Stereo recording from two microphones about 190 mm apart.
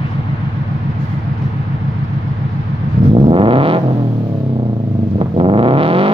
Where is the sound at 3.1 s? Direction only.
30° right (ahead or behind).